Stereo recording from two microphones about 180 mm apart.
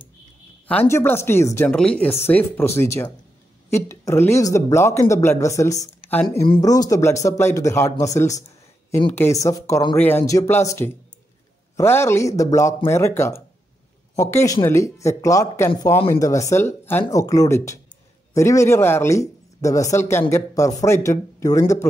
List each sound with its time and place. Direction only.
0.7 s speech: 10° left (ahead or behind)